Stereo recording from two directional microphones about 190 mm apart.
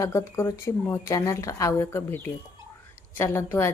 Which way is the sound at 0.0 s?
15° left (ahead or behind).